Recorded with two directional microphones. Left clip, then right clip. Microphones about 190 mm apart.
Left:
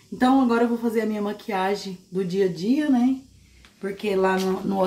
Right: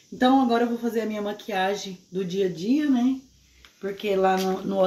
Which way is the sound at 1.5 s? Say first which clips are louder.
Left 1 dB; 15° left (ahead or behind).